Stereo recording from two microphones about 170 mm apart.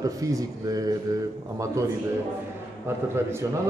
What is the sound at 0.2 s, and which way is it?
Speech, 20° right (ahead or behind).